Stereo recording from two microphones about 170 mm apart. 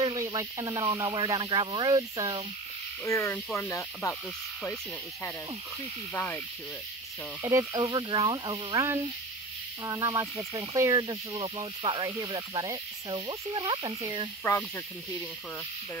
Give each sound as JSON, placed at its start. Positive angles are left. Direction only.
{"t": 0.0, "sound": "speech", "side_deg": -25}
{"t": 3.1, "sound": "speech", "side_deg": 15}
{"t": 6.1, "sound": "speech", "side_deg": 10}
{"t": 7.4, "sound": "speech", "side_deg": -20}